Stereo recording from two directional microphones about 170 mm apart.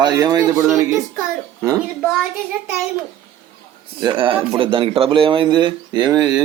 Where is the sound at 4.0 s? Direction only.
30° right (ahead or behind).